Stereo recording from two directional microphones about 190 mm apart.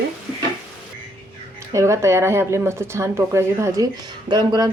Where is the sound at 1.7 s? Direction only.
15° right (ahead or behind).